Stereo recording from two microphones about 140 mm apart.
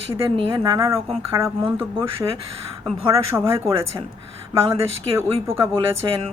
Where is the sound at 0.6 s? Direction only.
20° right (ahead or behind).